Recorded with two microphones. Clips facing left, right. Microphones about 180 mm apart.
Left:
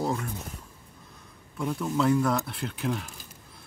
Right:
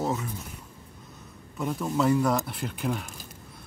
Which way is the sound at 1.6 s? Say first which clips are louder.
Even; 5° right (ahead or behind).